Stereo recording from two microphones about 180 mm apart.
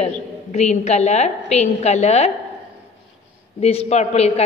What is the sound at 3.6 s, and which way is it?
Speech, 35° left (ahead or behind).